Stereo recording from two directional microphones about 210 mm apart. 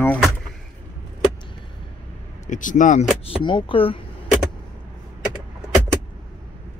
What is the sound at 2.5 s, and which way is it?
Speech, 40° left (ahead or behind).